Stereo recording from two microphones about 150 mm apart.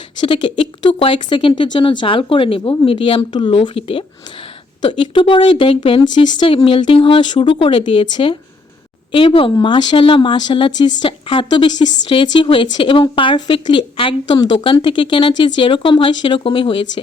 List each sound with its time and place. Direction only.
0.2 s a woman's voice: 35° left (ahead or behind)